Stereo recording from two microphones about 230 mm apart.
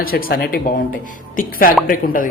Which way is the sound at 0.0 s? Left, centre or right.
Left.